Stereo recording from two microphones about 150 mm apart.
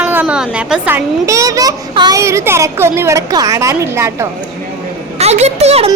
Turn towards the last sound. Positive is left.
turn(degrees=-45)  # may be behind; listen again after turning